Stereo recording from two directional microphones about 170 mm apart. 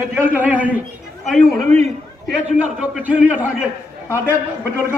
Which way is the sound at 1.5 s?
40° right (ahead or behind).